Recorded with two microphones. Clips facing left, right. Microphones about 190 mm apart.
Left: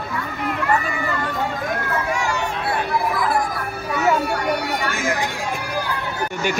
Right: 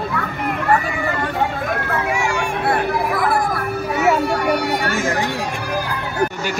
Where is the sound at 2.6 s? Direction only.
60° right (ahead or behind).